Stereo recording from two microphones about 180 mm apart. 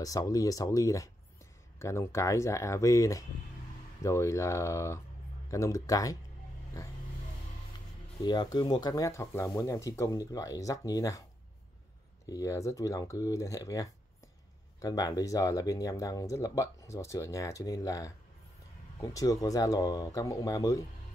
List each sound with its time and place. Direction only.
0.0 s speech: 20° left (ahead or behind)
8.2 s speech: 25° left (ahead or behind)
12.3 s speech: 20° left (ahead or behind)